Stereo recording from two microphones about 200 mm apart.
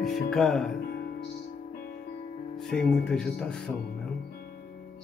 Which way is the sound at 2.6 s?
5° left (ahead or behind).